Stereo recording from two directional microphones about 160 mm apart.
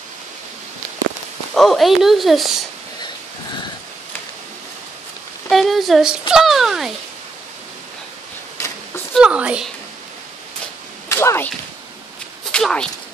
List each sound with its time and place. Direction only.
1.5 s speech: centre (ahead or behind)
5.5 s speech: centre (ahead or behind)
8.5 s a sound: 15° left (ahead or behind)
9.1 s a woman's voice: 5° right (ahead or behind)
11.1 s whip: 15° left (ahead or behind)
12.4 s speech: 5° left (ahead or behind)